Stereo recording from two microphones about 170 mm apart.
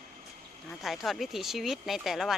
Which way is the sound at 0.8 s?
Centre (ahead or behind).